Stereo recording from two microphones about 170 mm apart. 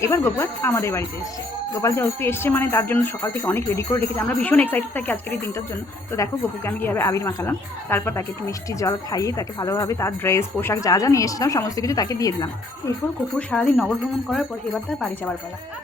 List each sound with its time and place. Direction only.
0.0 s a woman's voice: 15° left (ahead or behind)
13.5 s speech: 10° left (ahead or behind)